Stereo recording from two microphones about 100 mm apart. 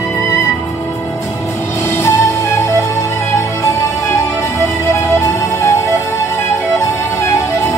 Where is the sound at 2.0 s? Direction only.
30° left (ahead or behind).